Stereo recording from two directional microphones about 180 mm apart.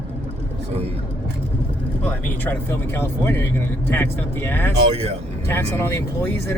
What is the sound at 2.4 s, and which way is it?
Speech, 10° left (ahead or behind).